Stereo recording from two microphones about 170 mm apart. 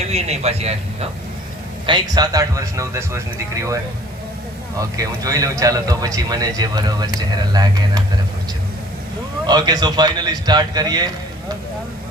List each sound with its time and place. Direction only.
0.0 s a man's voice: 40° right (ahead or behind)
1.9 s speech: 25° right (ahead or behind)
4.9 s speech: 20° right (ahead or behind)
9.5 s speech: 25° right (ahead or behind)